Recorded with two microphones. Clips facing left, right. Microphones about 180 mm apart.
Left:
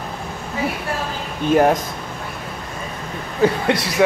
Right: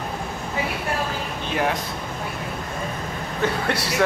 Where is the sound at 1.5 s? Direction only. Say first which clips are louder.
Left 10 dB; 45° left (ahead or behind).